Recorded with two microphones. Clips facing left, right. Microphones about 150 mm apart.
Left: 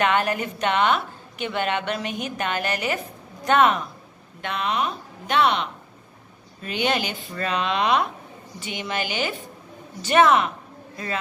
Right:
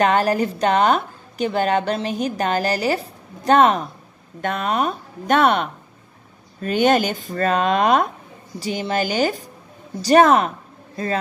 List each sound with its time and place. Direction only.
0.0 s a woman's voice: 35° right (ahead or behind)